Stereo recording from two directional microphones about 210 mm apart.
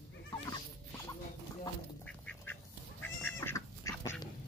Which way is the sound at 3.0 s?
10° left (ahead or behind).